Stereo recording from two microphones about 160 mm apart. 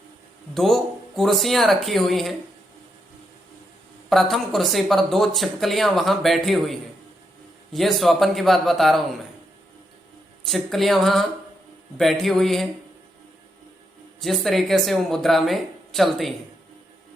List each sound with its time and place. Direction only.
0.5 s speech: centre (ahead or behind)
4.1 s speech: centre (ahead or behind)
10.4 s speech: centre (ahead or behind)
14.2 s speech: centre (ahead or behind)